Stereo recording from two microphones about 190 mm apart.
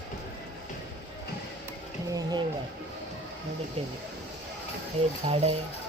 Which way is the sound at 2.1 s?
20° right (ahead or behind).